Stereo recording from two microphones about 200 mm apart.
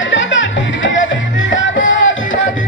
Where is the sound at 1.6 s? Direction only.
70° left (ahead or behind).